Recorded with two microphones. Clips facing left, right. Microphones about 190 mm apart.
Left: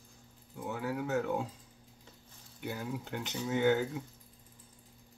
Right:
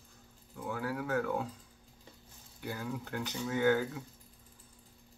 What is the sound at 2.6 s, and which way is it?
Speech, 20° left (ahead or behind).